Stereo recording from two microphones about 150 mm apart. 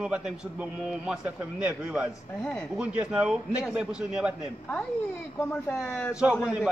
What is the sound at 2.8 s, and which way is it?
A man's voice, 10° right (ahead or behind).